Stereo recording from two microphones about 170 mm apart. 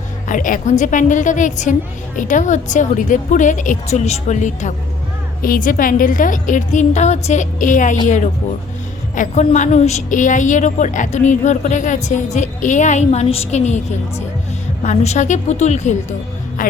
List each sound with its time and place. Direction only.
0.3 s a woman's voice: 50° left (ahead or behind)
14.8 s a woman's voice: 45° left (ahead or behind)